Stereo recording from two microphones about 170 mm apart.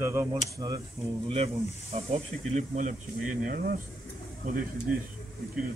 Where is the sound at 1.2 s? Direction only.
35° right (ahead or behind).